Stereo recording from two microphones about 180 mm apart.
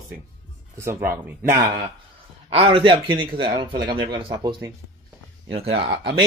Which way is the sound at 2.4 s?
30° right (ahead or behind).